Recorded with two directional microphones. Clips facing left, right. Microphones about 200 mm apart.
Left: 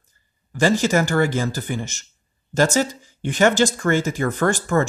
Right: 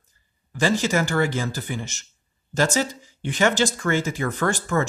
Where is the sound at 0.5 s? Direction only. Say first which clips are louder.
Left 4 dB; 45° left (ahead or behind).